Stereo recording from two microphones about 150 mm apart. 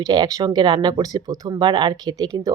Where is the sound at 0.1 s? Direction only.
30° right (ahead or behind).